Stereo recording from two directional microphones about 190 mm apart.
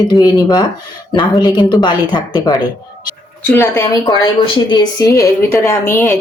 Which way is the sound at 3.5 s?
10° left (ahead or behind).